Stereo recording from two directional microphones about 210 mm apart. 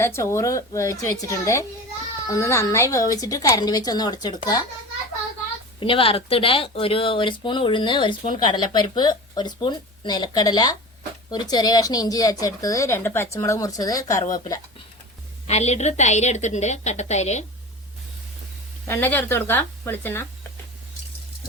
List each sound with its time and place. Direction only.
0.0 s a woman's voice: 15° left (ahead or behind)
5.8 s a woman's voice: 25° left (ahead or behind)
15.4 s a woman's voice: 30° left (ahead or behind)
18.9 s a woman's voice: 10° left (ahead or behind)